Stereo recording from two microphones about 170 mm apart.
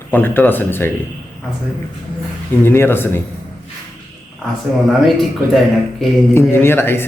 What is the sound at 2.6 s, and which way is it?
Speech, 15° left (ahead or behind).